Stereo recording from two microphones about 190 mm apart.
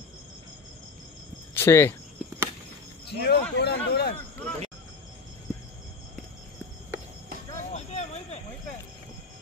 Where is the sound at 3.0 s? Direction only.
60° left (ahead or behind).